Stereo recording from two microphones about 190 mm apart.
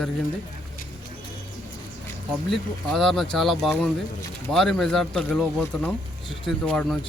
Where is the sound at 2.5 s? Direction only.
Centre (ahead or behind).